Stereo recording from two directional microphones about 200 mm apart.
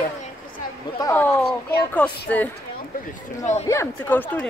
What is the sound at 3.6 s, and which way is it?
Speech, 10° left (ahead or behind).